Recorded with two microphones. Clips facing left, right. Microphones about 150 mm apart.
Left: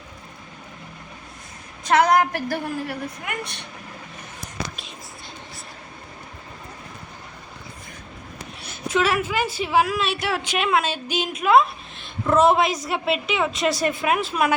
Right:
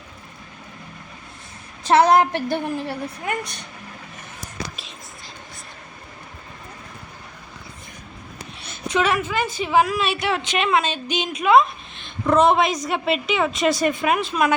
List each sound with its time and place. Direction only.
1.8 s a woman's voice: 30° right (ahead or behind)
8.6 s a woman's voice: 5° left (ahead or behind)